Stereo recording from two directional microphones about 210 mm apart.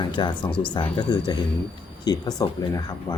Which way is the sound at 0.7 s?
20° left (ahead or behind).